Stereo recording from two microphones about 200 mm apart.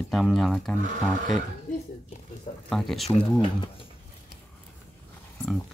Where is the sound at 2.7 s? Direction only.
Centre (ahead or behind).